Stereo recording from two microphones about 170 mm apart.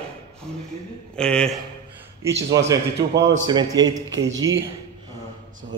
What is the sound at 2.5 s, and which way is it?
A man's voice, 20° right (ahead or behind).